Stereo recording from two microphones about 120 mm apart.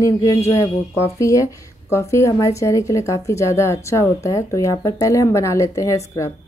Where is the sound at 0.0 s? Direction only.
30° left (ahead or behind).